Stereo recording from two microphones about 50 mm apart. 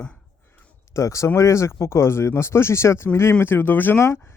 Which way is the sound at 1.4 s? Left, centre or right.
Left.